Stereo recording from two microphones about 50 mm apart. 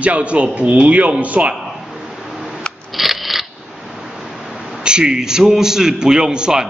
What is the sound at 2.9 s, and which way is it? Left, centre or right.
Scissors, centre.